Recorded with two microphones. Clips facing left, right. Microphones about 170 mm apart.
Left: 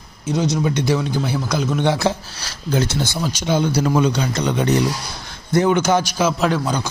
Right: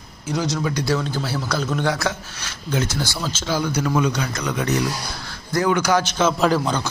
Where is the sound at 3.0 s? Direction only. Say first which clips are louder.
Left 3 dB; 20° left (ahead or behind).